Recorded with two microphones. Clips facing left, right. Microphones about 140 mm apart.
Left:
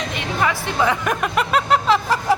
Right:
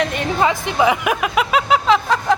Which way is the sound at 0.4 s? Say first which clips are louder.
Right 3 dB; 15° right (ahead or behind).